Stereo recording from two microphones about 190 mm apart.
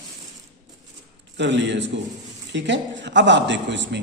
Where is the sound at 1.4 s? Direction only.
70° right (ahead or behind).